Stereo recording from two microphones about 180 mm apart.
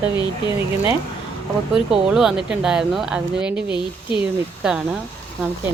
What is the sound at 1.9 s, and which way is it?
Speech, 5° right (ahead or behind).